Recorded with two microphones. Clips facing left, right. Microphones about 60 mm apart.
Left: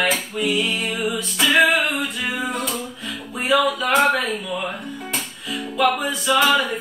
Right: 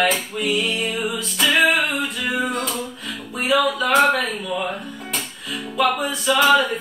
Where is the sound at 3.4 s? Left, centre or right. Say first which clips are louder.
Even; centre.